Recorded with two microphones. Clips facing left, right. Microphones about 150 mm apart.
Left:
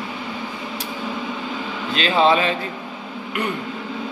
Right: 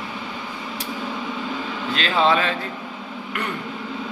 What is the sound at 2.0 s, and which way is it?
Speech, 15° left (ahead or behind).